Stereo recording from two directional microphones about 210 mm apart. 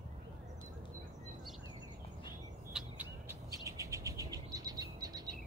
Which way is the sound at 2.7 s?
10° right (ahead or behind).